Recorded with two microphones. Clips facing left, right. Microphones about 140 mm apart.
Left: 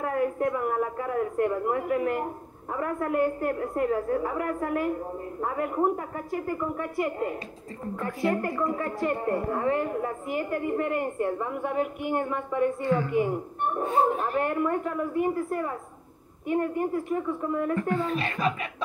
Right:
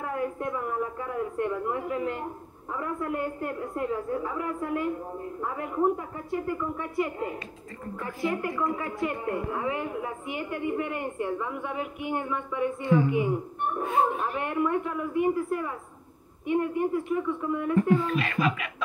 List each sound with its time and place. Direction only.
0.0 s a woman's voice: 55° left (ahead or behind); by 18.7 s 35° left (ahead or behind)